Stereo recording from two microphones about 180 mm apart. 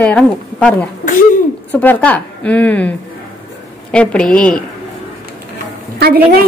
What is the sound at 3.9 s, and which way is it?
Speech, 5° left (ahead or behind).